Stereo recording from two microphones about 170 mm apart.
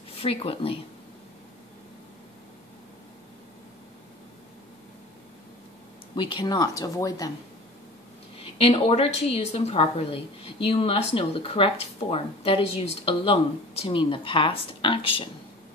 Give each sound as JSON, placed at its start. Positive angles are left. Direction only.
{"t": 0.2, "sound": "speech", "side_deg": 35}
{"t": 6.1, "sound": "speech", "side_deg": 25}
{"t": 8.4, "sound": "speech", "side_deg": 35}